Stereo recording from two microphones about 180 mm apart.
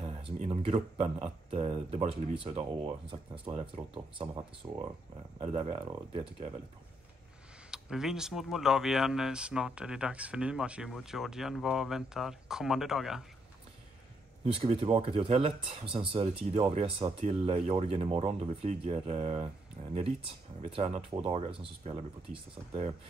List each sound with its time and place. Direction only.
0.0 s speech: 30° right (ahead or behind)
7.7 s speech: 5° right (ahead or behind)
14.4 s speech: 35° right (ahead or behind)